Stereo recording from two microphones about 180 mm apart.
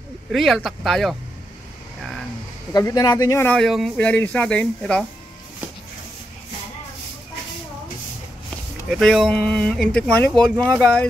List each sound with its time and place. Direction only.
0.3 s speech: centre (ahead or behind)
2.0 s vehicle: centre (ahead or behind)
2.7 s speech: 20° left (ahead or behind)
3.5 s speech: centre (ahead or behind)
8.9 s speech: 5° left (ahead or behind)